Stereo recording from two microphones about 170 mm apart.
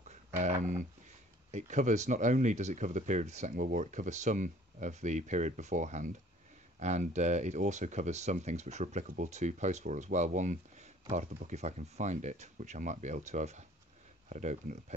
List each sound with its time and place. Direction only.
0.4 s speech: 45° right (ahead or behind)